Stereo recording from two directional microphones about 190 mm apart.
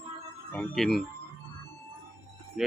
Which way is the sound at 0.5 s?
5° left (ahead or behind).